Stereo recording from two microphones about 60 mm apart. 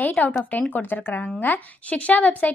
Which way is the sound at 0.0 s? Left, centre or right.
Left.